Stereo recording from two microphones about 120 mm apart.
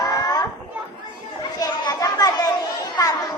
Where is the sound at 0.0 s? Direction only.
30° left (ahead or behind).